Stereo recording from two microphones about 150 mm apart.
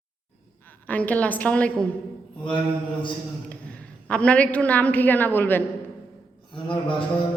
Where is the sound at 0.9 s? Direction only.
10° left (ahead or behind).